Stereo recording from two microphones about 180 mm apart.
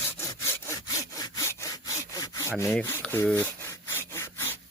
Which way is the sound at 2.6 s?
15° left (ahead or behind).